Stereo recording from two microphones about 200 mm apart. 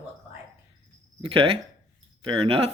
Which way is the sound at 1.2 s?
25° right (ahead or behind).